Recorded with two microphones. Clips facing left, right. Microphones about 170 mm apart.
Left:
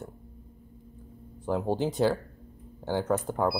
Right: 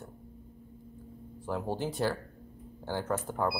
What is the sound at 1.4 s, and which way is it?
Speech, 20° left (ahead or behind).